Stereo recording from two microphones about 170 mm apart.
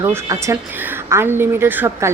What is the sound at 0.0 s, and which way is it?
A woman's voice, 15° right (ahead or behind).